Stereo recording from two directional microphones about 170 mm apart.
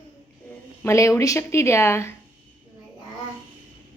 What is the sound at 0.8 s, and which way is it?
Speech, 20° left (ahead or behind).